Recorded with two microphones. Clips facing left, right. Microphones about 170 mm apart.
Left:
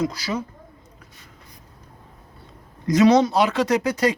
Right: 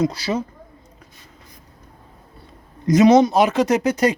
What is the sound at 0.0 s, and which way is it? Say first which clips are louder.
Speech: right 4 dB; 25° right (ahead or behind).